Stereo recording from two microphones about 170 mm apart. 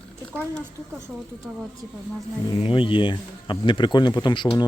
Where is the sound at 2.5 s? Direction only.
30° left (ahead or behind).